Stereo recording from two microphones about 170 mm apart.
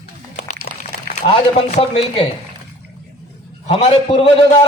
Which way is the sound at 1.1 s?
40° left (ahead or behind).